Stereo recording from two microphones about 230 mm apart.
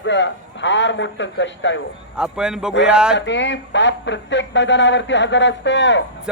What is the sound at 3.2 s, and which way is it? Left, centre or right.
A woman's voice, left.